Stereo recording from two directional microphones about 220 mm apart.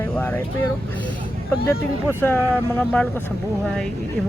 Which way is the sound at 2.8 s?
5° left (ahead or behind).